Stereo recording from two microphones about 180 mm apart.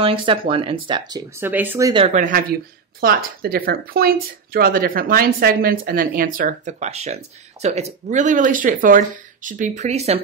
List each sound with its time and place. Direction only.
0.0 s speech: 30° right (ahead or behind)
2.0 s speech: 40° right (ahead or behind)